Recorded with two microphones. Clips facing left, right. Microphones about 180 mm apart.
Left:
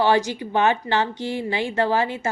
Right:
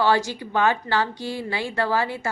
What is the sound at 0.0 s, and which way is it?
A woman's voice, 20° left (ahead or behind).